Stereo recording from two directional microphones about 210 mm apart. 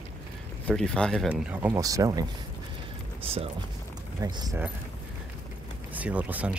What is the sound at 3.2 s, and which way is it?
Speech, 25° right (ahead or behind).